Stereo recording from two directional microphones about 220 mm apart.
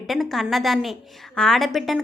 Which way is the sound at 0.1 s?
Centre (ahead or behind).